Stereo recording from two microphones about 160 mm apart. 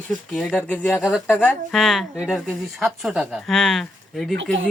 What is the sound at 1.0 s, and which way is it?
Speech, 5° right (ahead or behind).